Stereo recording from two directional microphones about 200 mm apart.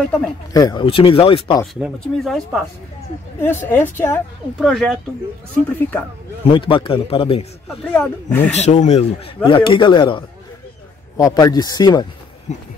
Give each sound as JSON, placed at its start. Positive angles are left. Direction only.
{"t": 0.5, "sound": "a woman's voice", "side_deg": 20}
{"t": 1.8, "sound": "speech", "side_deg": 0}
{"t": 3.3, "sound": "a woman's voice", "side_deg": 10}
{"t": 4.6, "sound": "a woman's voice", "side_deg": 0}
{"t": 6.5, "sound": "speech", "side_deg": 25}
{"t": 7.6, "sound": "speech", "side_deg": 5}
{"t": 8.5, "sound": "speech", "side_deg": 35}
{"t": 12.5, "sound": "speech", "side_deg": 35}